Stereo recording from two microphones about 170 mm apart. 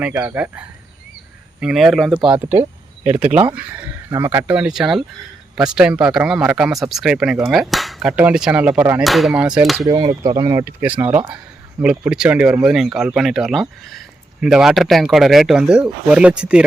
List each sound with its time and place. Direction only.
0.1 s speech: 10° right (ahead or behind)
1.6 s speech: centre (ahead or behind)
9.8 s speech: 20° right (ahead or behind); by 16.6 s 5° right (ahead or behind)